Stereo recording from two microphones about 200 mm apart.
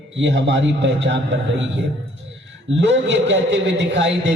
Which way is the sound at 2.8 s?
65° right (ahead or behind).